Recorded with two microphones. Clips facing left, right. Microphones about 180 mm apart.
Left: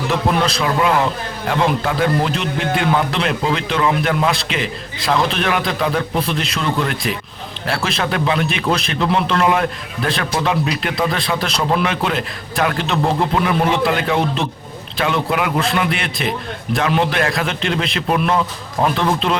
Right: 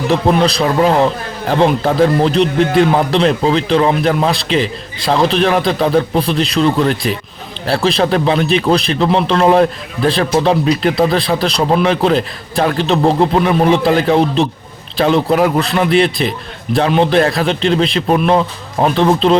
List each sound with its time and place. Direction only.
0.6 s a man's voice: 35° right (ahead or behind)